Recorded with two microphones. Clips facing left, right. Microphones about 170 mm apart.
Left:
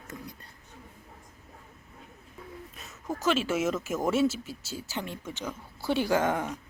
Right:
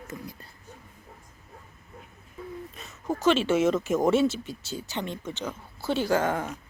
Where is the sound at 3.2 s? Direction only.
Centre (ahead or behind).